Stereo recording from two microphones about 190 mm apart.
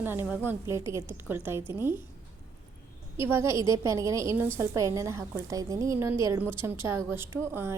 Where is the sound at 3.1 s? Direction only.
15° right (ahead or behind).